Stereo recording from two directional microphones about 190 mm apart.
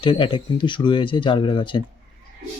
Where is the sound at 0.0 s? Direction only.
25° left (ahead or behind).